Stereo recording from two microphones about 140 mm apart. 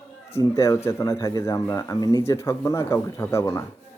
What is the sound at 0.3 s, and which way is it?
Speech, 20° left (ahead or behind).